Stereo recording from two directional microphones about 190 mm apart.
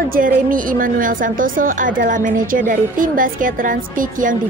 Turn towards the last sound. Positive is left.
turn(degrees=-45)  # may be behind; listen again after turning